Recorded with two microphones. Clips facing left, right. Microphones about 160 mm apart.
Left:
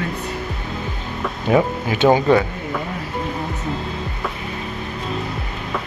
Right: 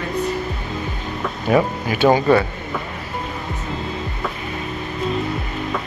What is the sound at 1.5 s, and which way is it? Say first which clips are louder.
Speech: even; 20° left (ahead or behind).